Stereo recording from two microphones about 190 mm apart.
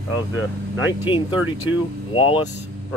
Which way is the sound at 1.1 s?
25° left (ahead or behind).